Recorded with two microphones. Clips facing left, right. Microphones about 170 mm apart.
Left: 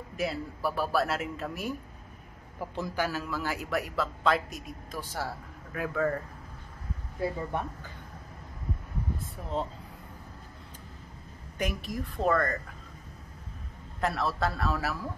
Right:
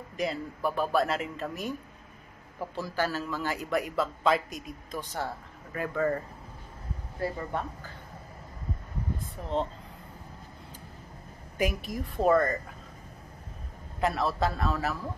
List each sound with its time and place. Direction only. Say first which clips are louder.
0.2 s a man's voice: right 1 dB; 5° left (ahead or behind)
2.7 s a man's voice: right 1 dB; 15° left (ahead or behind); by 6.2 s centre (ahead or behind)
7.2 s speech: left 1 dB; 15° left (ahead or behind)
9.4 s a man's voice: right 4 dB; centre (ahead or behind)
11.5 s a man's voice: right 3 dB; centre (ahead or behind)
14.0 s a man's voice: right 2 dB; centre (ahead or behind)